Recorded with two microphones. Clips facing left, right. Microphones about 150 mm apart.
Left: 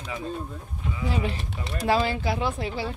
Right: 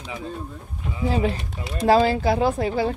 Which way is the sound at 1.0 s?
35° right (ahead or behind).